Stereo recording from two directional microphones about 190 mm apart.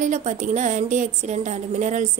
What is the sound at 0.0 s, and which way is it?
A woman's voice, 40° right (ahead or behind).